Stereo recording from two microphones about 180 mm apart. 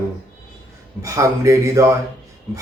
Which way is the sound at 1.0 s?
15° right (ahead or behind).